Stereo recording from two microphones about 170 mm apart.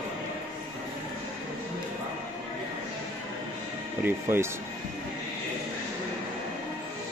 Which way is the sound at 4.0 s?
15° right (ahead or behind).